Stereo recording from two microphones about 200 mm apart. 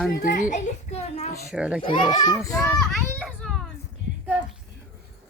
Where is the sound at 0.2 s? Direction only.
40° left (ahead or behind).